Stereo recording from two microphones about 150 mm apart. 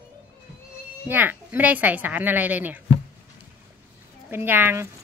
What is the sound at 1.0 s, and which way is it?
A woman's voice, 10° right (ahead or behind).